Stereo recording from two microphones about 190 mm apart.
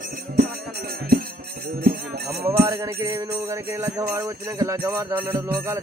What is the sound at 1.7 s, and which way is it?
Speech, 55° right (ahead or behind).